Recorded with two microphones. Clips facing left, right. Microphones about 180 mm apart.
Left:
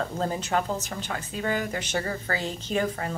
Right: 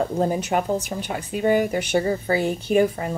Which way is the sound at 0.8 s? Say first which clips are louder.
Right 5 dB; 15° right (ahead or behind).